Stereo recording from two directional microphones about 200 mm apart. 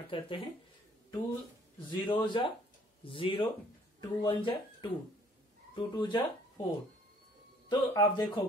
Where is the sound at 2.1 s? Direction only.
25° left (ahead or behind).